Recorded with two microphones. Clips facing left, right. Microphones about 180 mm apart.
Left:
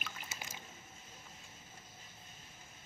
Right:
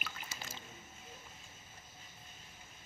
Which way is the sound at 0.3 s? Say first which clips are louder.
Even; 15° left (ahead or behind).